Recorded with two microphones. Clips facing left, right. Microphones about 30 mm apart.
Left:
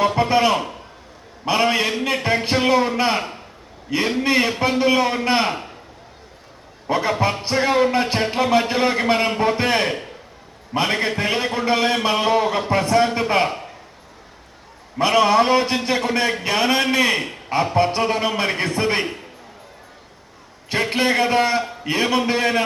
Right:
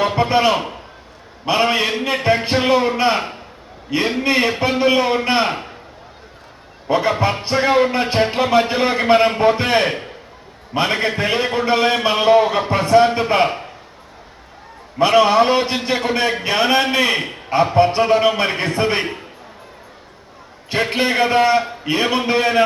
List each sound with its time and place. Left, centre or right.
0.0 s a sound: right
1.5 s a man's voice: right
6.8 s a man's voice: centre
15.1 s a man's voice: right
18.3 s a man's voice: centre
18.9 s a man's voice: right
20.7 s a man's voice: right